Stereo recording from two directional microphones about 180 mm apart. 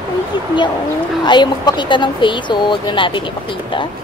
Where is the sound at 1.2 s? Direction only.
25° left (ahead or behind).